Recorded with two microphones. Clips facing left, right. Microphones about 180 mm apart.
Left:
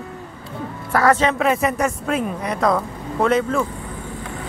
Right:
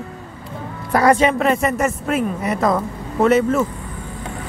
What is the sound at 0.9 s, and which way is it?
Speech, 15° right (ahead or behind).